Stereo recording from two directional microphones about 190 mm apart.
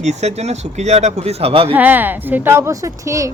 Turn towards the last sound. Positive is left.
turn(degrees=-15)  # may be behind; listen again after turning